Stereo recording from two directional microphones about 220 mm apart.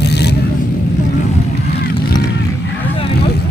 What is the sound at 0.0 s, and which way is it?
Vehicle, 50° left (ahead or behind).